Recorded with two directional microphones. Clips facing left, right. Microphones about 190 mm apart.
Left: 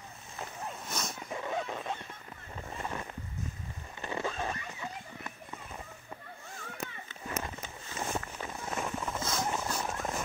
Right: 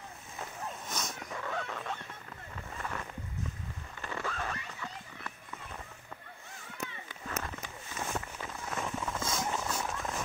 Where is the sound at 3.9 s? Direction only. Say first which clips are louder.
Left 3 dB; 20° left (ahead or behind).